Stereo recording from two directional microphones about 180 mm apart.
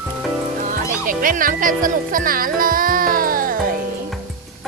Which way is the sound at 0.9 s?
50° right (ahead or behind).